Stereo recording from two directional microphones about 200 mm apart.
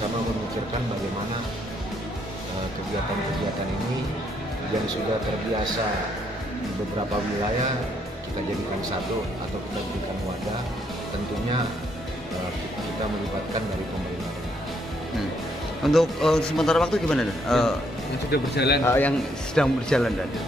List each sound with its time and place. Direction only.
15.8 s a man's voice: centre (ahead or behind)
18.3 s speech: 55° left (ahead or behind)
18.9 s a man's voice: 10° left (ahead or behind)